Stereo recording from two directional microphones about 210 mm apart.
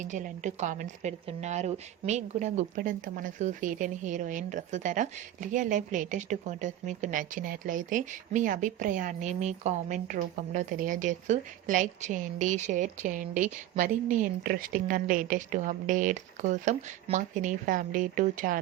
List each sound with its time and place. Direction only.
0.0 s a woman's voice: 35° right (ahead or behind)